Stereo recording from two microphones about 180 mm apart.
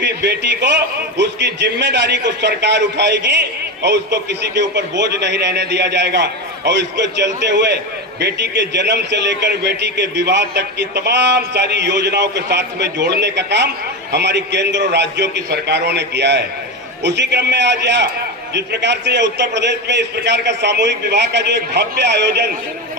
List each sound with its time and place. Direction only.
0.0 s a man's voice: 75° right (ahead or behind)